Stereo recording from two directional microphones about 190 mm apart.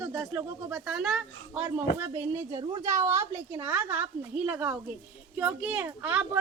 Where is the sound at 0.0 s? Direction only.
15° right (ahead or behind).